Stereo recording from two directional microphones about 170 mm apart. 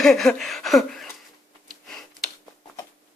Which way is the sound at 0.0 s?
5° left (ahead or behind).